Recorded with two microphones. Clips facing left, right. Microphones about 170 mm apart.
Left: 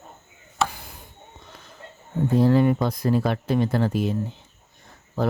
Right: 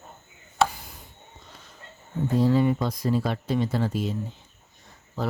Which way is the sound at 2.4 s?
60° left (ahead or behind).